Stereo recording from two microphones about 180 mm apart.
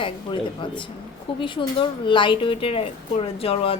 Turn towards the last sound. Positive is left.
turn(degrees=30)  # may be behind; listen again after turning